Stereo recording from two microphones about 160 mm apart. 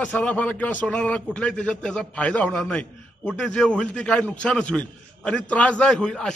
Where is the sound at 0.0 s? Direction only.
10° left (ahead or behind).